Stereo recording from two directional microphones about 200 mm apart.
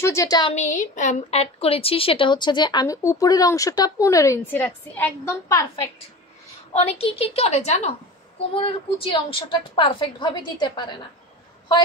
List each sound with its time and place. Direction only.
0.0 s a woman's voice: 15° left (ahead or behind)
0.6 s a woman's voice: 40° left (ahead or behind); by 5.9 s 15° left (ahead or behind)
6.7 s a woman's voice: 30° left (ahead or behind)